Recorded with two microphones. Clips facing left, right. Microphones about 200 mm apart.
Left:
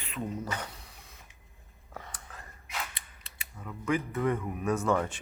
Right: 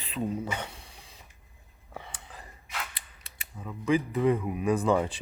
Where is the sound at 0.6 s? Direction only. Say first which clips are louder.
Right 2 dB; 25° right (ahead or behind).